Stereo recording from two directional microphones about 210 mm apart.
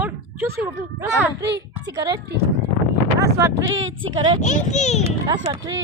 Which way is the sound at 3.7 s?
65° right (ahead or behind).